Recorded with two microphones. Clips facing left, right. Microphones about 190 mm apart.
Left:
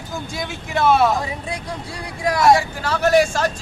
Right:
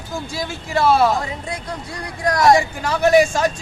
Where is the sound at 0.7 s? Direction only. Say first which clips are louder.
Right 1 dB; centre (ahead or behind).